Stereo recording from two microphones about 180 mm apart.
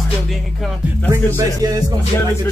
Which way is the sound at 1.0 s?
15° right (ahead or behind).